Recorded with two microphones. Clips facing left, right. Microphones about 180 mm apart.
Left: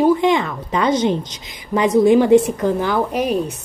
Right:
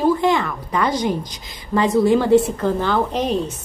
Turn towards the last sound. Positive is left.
turn(degrees=10)  # may be behind; listen again after turning